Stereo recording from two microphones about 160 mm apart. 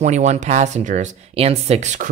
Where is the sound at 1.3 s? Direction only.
40° right (ahead or behind).